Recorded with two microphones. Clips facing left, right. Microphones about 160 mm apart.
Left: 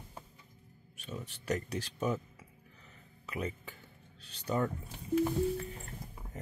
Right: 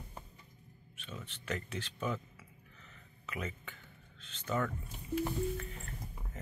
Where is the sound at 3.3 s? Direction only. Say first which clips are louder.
Left 4 dB; 35° left (ahead or behind).